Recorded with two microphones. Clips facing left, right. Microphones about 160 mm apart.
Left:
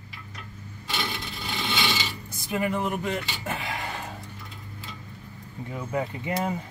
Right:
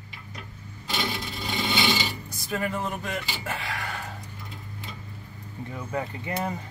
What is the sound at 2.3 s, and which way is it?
Speech, 15° left (ahead or behind).